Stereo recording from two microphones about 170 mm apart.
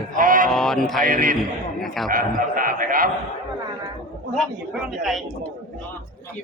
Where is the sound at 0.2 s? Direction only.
55° right (ahead or behind).